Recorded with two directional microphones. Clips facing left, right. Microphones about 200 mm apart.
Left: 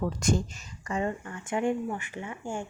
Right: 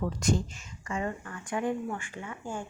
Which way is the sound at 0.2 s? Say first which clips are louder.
Left 1 dB; 45° left (ahead or behind).